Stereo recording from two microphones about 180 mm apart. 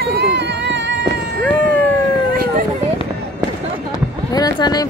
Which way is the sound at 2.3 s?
55° right (ahead or behind).